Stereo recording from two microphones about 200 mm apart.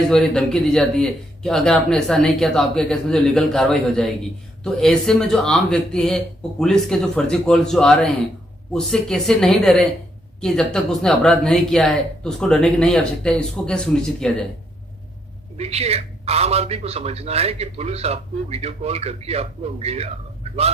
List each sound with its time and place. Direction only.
0.1 s a man's voice: 5° left (ahead or behind)
15.5 s speech: 30° right (ahead or behind)